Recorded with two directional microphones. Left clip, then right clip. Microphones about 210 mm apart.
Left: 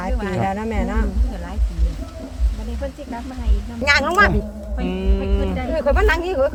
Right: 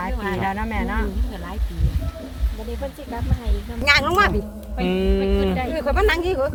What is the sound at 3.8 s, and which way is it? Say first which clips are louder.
Speech: left 2 dB; 5° left (ahead or behind).